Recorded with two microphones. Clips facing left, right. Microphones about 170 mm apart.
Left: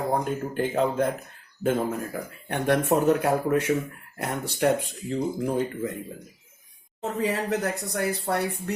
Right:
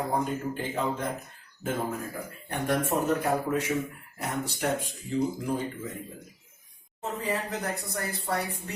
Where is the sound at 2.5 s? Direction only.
70° left (ahead or behind).